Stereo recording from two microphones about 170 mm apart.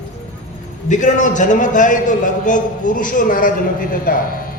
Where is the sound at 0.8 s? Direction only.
45° left (ahead or behind).